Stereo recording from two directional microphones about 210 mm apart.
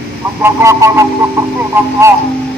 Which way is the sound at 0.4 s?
15° right (ahead or behind).